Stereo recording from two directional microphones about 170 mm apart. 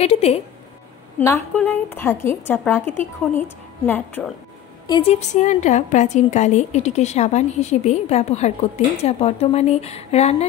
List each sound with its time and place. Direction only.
0.0 s a woman's voice: 35° left (ahead or behind)
1.2 s a woman's voice: 15° left (ahead or behind)
4.8 s speech: 25° left (ahead or behind)
5.1 s a woman's voice: 45° left (ahead or behind)